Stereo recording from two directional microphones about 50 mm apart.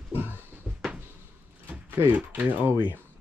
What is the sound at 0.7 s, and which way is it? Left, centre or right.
Cupboard open or close, centre.